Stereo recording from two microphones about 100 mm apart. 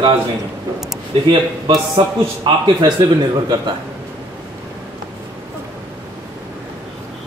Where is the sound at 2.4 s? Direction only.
55° right (ahead or behind).